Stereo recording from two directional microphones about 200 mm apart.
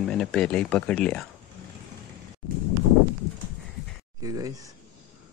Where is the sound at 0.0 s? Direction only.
5° left (ahead or behind).